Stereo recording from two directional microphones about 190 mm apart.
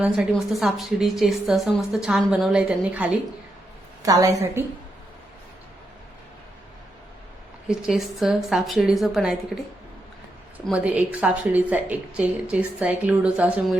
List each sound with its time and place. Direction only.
0.0 s a woman's voice: centre (ahead or behind)
4.0 s a woman's voice: 20° right (ahead or behind)
7.7 s a woman's voice: centre (ahead or behind)
10.7 s a woman's voice: 5° right (ahead or behind)